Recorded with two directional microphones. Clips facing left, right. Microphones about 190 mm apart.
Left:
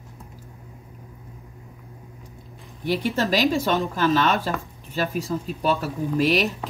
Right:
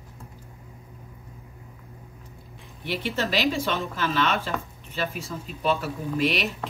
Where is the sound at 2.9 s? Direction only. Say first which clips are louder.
Left 5 dB; 40° left (ahead or behind).